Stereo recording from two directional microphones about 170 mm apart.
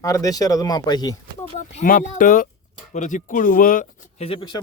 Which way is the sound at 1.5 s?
45° left (ahead or behind).